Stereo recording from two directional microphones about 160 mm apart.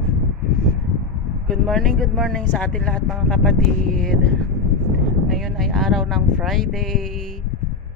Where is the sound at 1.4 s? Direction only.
Centre (ahead or behind).